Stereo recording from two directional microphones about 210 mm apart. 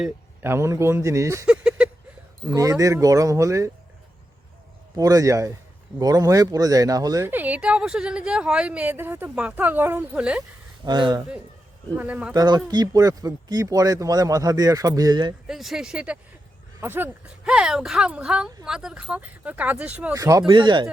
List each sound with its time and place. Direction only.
0.0 s speech: 10° right (ahead or behind)
2.5 s speech: 15° right (ahead or behind)
4.9 s speech: 15° right (ahead or behind)
10.8 s speech: 20° right (ahead or behind)
11.9 s speech: 5° right (ahead or behind)
12.3 s speech: 20° right (ahead or behind)
15.4 s speech: centre (ahead or behind); by 20.9 s 20° right (ahead or behind)